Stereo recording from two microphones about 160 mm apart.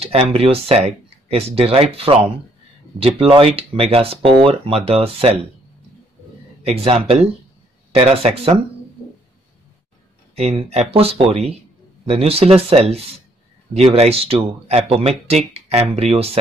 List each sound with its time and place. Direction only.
0.0 s speech: 40° right (ahead or behind)
6.6 s speech: 35° right (ahead or behind)
10.3 s speech: 40° right (ahead or behind)